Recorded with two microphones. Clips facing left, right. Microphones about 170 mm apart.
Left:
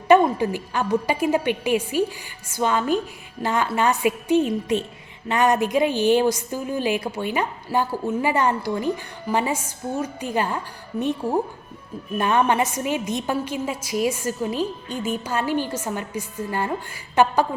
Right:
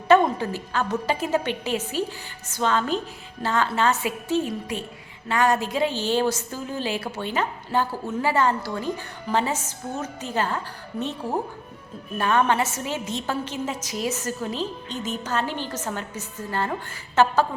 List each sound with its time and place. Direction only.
0.1 s a woman's voice: 15° left (ahead or behind)
12.1 s a woman's voice: 15° left (ahead or behind)